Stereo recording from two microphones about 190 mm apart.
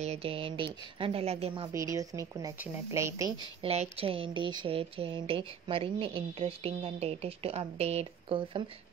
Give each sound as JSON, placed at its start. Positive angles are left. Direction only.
{"t": 0.0, "sound": "speech", "side_deg": -30}
{"t": 1.7, "sound": "speech", "side_deg": -15}
{"t": 3.6, "sound": "speech", "side_deg": -35}